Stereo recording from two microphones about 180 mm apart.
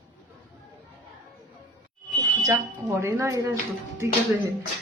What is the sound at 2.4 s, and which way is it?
Speech, 15° right (ahead or behind).